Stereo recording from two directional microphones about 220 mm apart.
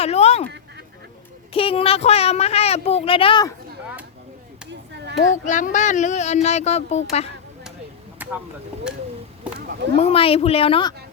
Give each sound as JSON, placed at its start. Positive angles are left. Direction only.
{"t": 0.0, "sound": "speech", "side_deg": 30}
{"t": 1.5, "sound": "speech", "side_deg": 25}
{"t": 5.3, "sound": "speech", "side_deg": 35}
{"t": 8.2, "sound": "a sound", "side_deg": -5}
{"t": 9.6, "sound": "a sound", "side_deg": -50}
{"t": 10.0, "sound": "speech", "side_deg": 25}